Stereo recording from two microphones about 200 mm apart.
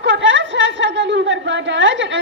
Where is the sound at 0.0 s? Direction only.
65° right (ahead or behind).